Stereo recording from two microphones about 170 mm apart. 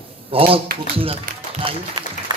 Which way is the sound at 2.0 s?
25° right (ahead or behind).